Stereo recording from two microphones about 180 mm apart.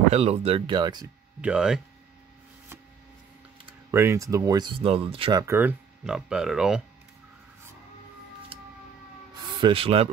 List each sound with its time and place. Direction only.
0.1 s speech: 35° right (ahead or behind)
1.4 s speech: 5° right (ahead or behind)
3.9 s speech: 15° right (ahead or behind); by 5.4 s 30° right (ahead or behind)
5.4 s speech: 15° right (ahead or behind)
9.4 s speech: 25° right (ahead or behind)